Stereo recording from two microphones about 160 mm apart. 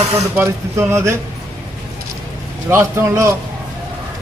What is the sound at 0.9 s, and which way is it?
Speech, 15° right (ahead or behind).